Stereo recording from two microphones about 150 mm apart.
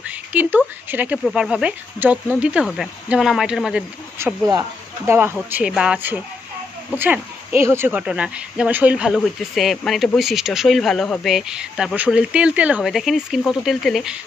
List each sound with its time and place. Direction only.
0.0 s a sound: 10° right (ahead or behind)
0.8 s speech: 10° right (ahead or behind)
4.5 s speech: 20° right (ahead or behind); by 14.1 s centre (ahead or behind)